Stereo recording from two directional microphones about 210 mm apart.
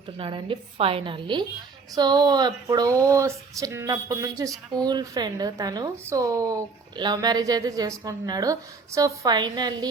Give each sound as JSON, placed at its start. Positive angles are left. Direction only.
{"t": 0.2, "sound": "a woman's voice", "side_deg": -25}